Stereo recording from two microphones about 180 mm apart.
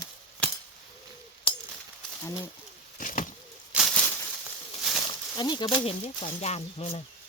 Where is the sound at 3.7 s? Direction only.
Centre (ahead or behind).